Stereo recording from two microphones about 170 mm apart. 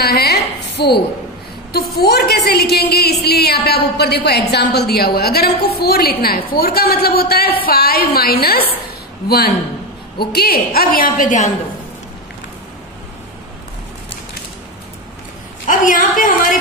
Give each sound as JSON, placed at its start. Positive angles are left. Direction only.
{"t": 0.0, "sound": "a sound", "side_deg": 70}
{"t": 1.7, "sound": "a woman's voice", "side_deg": 65}
{"t": 10.1, "sound": "a woman's voice", "side_deg": 65}
{"t": 15.6, "sound": "a woman's voice", "side_deg": 50}